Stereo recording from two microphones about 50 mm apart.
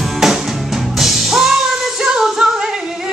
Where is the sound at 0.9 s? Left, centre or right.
Centre.